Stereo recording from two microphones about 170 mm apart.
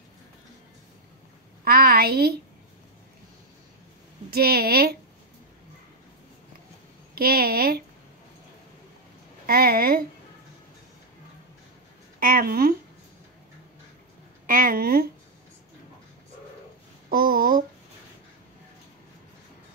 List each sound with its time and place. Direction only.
1.6 s a woman's voice: 65° right (ahead or behind)
4.3 s a woman's voice: 65° right (ahead or behind)
7.2 s a woman's voice: 60° right (ahead or behind)
9.5 s a woman's voice: 60° right (ahead or behind)
12.2 s a woman's voice: 55° right (ahead or behind)
14.4 s a woman's voice: 55° right (ahead or behind)
17.1 s a woman's voice: 55° right (ahead or behind)